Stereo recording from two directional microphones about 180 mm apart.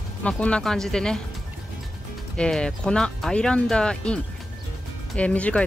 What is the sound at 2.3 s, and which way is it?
Speech, 5° left (ahead or behind).